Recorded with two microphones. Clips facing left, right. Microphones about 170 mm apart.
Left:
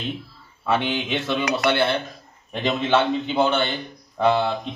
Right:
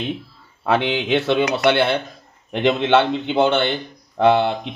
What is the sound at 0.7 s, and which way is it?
Speech, 70° right (ahead or behind).